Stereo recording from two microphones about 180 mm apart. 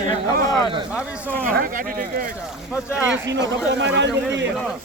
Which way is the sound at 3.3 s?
80° right.